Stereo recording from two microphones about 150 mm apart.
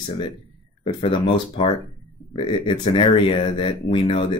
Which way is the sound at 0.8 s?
35° left (ahead or behind).